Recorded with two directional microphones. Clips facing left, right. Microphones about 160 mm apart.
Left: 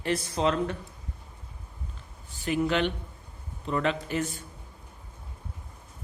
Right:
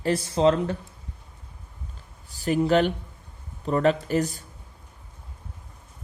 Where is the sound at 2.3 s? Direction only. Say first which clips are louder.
Right 6 dB; 40° right (ahead or behind).